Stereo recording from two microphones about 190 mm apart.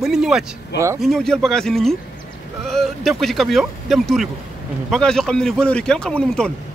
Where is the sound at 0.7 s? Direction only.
15° right (ahead or behind).